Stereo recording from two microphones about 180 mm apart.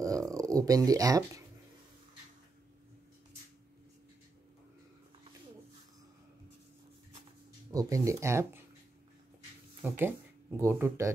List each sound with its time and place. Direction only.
0.0 s speech: 20° right (ahead or behind)
7.7 s speech: 20° right (ahead or behind)
9.8 s speech: 10° right (ahead or behind)